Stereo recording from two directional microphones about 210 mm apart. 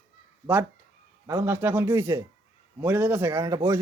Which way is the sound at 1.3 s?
10° right (ahead or behind).